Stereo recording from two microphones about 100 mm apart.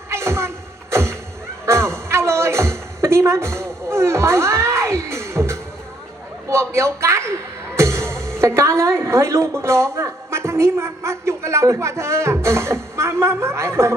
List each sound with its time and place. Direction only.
0.1 s music: 25° right (ahead or behind)
1.6 s a sound: 25° right (ahead or behind)
6.5 s a woman's voice: 30° right (ahead or behind)